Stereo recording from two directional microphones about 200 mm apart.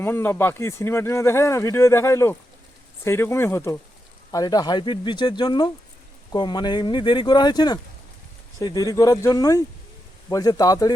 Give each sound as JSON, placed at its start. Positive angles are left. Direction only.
{"t": 0.0, "sound": "speech", "side_deg": 10}